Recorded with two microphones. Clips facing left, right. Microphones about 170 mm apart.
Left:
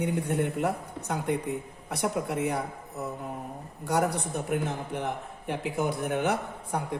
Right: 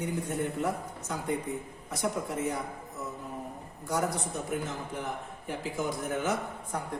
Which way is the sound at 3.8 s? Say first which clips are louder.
Left 4 dB; 65° left (ahead or behind).